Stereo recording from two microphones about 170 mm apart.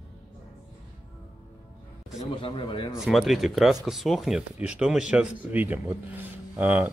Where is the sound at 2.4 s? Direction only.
30° left (ahead or behind).